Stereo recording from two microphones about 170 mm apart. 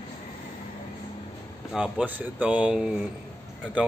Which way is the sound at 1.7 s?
5° right (ahead or behind).